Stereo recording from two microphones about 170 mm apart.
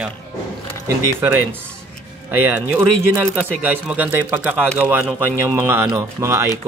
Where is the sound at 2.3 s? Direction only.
10° right (ahead or behind).